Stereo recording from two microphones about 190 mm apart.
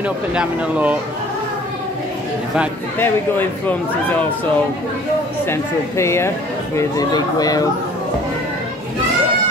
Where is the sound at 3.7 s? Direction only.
10° left (ahead or behind).